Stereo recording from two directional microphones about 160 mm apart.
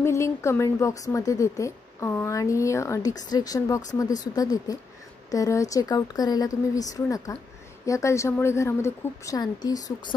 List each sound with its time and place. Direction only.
0.0 s a woman's voice: 15° left (ahead or behind)